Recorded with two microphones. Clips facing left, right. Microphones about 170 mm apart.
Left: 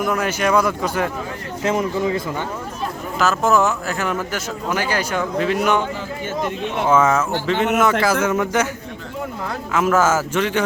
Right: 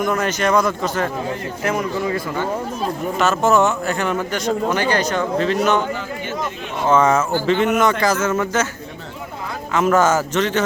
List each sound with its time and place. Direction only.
0.0 s speech: 5° left (ahead or behind)
1.6 s speech: 20° left (ahead or behind)
3.2 s speech: centre (ahead or behind)
6.8 s speech: 5° left (ahead or behind)
7.5 s a man's voice: 80° left
8.0 s speech: 15° left (ahead or behind)
9.7 s speech: 5° left (ahead or behind)